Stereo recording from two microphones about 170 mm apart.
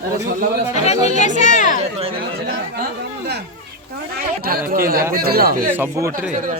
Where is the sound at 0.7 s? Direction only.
40° left (ahead or behind).